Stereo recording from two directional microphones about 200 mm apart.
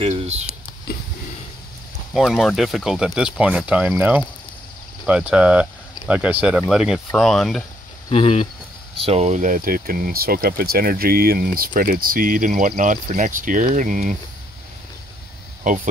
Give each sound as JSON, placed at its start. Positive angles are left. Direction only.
{"t": 0.0, "sound": "a sound", "side_deg": -30}
{"t": 2.1, "sound": "speech", "side_deg": 0}
{"t": 8.1, "sound": "speech", "side_deg": 30}
{"t": 8.9, "sound": "speech", "side_deg": -30}
{"t": 15.6, "sound": "speech", "side_deg": -40}